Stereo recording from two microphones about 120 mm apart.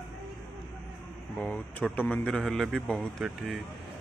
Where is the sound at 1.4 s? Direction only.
15° left (ahead or behind).